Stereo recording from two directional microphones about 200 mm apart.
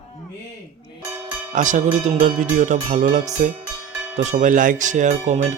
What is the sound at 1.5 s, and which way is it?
A man's voice, 40° right (ahead or behind).